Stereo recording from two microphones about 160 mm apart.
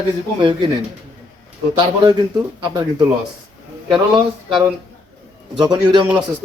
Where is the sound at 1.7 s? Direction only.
25° right (ahead or behind).